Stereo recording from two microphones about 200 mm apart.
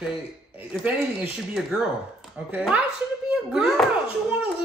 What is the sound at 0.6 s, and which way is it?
A child's voice, 10° right (ahead or behind).